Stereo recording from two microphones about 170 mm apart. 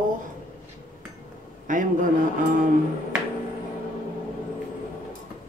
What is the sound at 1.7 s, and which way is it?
Speech, 50° right (ahead or behind).